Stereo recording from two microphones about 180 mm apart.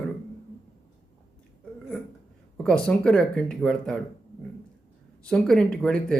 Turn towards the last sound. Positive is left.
turn(degrees=5)  # may be behind; listen again after turning